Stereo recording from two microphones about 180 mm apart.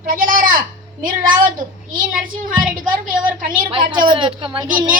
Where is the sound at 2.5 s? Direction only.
5° right (ahead or behind).